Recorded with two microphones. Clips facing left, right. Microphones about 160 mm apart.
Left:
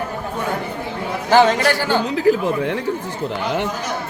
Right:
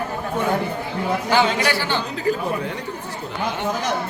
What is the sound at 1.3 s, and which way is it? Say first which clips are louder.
Speech: left 7 dB; 45° left (ahead or behind).